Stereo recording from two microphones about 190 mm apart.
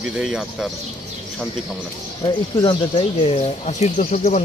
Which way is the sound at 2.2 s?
25° left (ahead or behind).